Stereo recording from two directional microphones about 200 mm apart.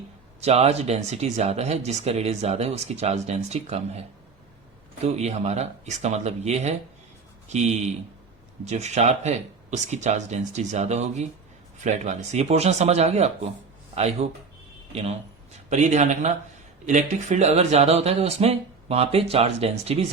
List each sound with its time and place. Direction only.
0.3 s speech: 30° right (ahead or behind)
5.0 s speech: 35° right (ahead or behind)